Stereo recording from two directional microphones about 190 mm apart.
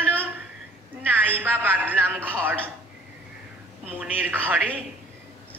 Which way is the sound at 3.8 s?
10° right (ahead or behind).